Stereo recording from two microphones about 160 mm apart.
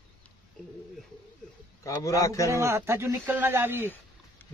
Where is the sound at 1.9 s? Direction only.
20° left (ahead or behind).